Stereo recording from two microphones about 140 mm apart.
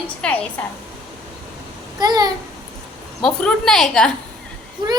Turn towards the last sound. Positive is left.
turn(degrees=-30)  # may be behind; listen again after turning